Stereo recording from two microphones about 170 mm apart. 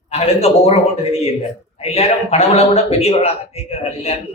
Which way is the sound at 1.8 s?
35° left (ahead or behind).